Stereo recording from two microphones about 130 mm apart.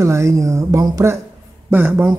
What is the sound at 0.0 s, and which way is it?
Speech, 25° right (ahead or behind).